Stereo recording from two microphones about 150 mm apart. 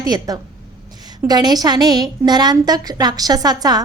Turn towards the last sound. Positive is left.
turn(degrees=-25)  # may be behind; listen again after turning